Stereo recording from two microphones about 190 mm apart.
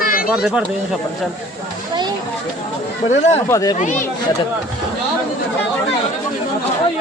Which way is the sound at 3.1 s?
40° left (ahead or behind).